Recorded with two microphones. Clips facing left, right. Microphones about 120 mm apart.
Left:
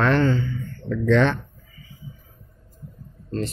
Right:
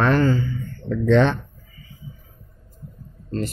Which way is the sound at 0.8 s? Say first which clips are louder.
Right 2 dB; 25° right (ahead or behind).